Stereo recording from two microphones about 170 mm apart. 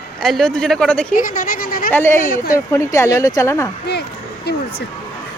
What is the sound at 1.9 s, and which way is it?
Speech, 15° left (ahead or behind).